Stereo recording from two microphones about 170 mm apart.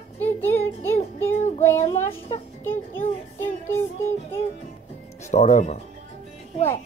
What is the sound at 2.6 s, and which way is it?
Child singing, 15° left (ahead or behind).